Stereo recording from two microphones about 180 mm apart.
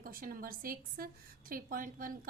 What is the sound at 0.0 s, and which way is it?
A woman's voice, 55° right (ahead or behind).